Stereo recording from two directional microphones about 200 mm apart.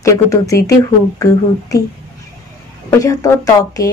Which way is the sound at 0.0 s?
15° left (ahead or behind).